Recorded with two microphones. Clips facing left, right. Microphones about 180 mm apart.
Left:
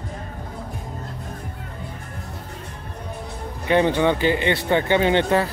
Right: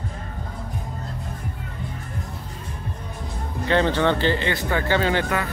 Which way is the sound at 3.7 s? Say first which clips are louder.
Left 2 dB; 15° left (ahead or behind).